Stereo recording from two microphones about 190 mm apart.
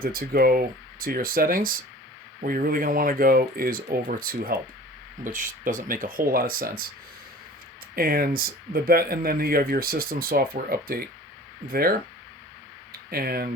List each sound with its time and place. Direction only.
0.0 s speech: 50° right (ahead or behind)
7.9 s speech: 50° right (ahead or behind)
13.1 s speech: 50° right (ahead or behind)